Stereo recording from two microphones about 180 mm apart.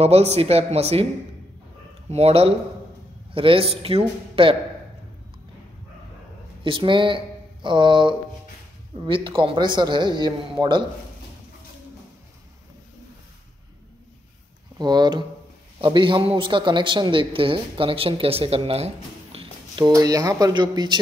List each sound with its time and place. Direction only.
0.0 s speech: 35° right (ahead or behind)
2.0 s speech: 35° right (ahead or behind)
6.6 s a man's voice: 25° right (ahead or behind)
14.8 s a man's voice: 25° right (ahead or behind)
19.3 s a sound: 30° right (ahead or behind)
19.8 s a man's voice: 20° right (ahead or behind)